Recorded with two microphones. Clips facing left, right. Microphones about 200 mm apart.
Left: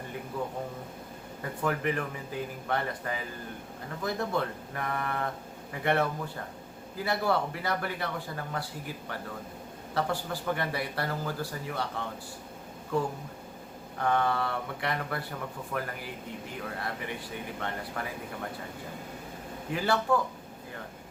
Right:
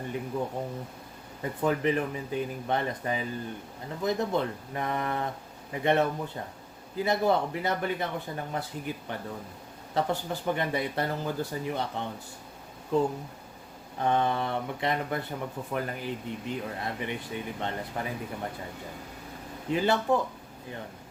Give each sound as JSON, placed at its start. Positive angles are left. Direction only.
{"t": 0.3, "sound": "speech", "side_deg": -20}
{"t": 1.6, "sound": "speech", "side_deg": -20}
{"t": 19.7, "sound": "speech", "side_deg": -20}